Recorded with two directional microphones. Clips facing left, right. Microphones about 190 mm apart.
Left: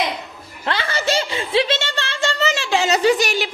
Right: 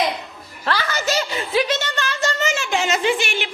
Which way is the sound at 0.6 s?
25° left (ahead or behind).